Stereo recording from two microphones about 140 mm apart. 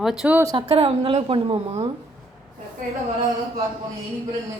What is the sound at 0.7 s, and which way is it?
A woman's voice, 45° right (ahead or behind).